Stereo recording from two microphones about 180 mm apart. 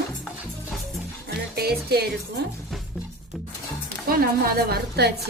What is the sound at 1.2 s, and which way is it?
Music, 60° right (ahead or behind).